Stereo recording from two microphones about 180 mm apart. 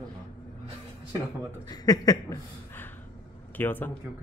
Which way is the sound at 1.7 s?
20° left (ahead or behind).